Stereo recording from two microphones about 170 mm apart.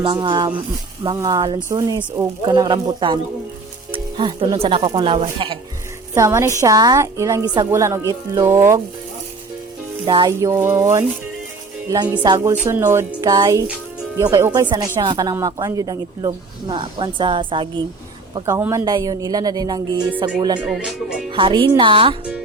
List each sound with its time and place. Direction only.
0.0 s speech: 25° right (ahead or behind)
6.1 s speech: 20° right (ahead or behind)
10.1 s speech: 25° right (ahead or behind)
12.2 s speech: 25° right (ahead or behind)
18.4 s speech: 15° right (ahead or behind)
20.7 s speech: 5° right (ahead or behind)
21.3 s speech: 30° right (ahead or behind)